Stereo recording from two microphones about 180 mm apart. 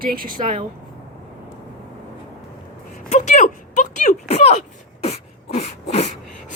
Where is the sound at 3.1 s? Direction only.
40° left (ahead or behind).